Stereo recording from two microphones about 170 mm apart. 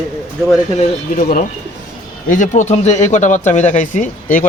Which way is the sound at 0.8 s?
55° left (ahead or behind).